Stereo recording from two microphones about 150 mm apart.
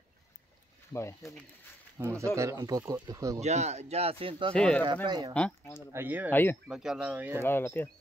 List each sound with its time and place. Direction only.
2.0 s speech: 20° right (ahead or behind)
3.3 s speech: 45° right (ahead or behind)
4.6 s speech: 5° left (ahead or behind)
5.0 s speech: 30° right (ahead or behind)
5.3 s speech: 10° left (ahead or behind)
5.9 s speech: 10° right (ahead or behind)
6.3 s speech: 15° left (ahead or behind)
6.7 s speech: 5° right (ahead or behind)
7.4 s speech: 15° left (ahead or behind)